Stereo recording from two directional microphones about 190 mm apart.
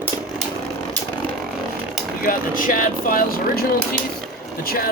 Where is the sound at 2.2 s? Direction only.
45° left (ahead or behind).